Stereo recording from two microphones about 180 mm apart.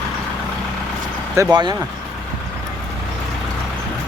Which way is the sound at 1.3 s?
20° right (ahead or behind).